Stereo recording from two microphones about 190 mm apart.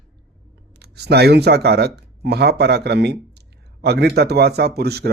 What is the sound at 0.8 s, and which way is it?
Speech, 60° right (ahead or behind).